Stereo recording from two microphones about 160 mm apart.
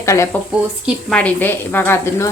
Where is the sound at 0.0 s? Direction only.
20° left (ahead or behind).